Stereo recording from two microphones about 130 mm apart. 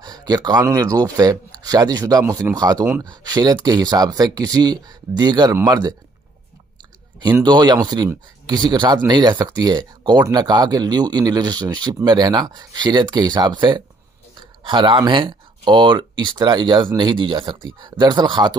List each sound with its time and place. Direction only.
0.0 s a sound: 30° right (ahead or behind)
0.7 s speech: 30° right (ahead or behind)
7.4 s speech: 35° right (ahead or behind)